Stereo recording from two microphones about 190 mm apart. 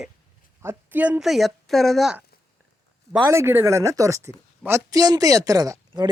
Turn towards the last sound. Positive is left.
turn(degrees=-20)  # may be behind; listen again after turning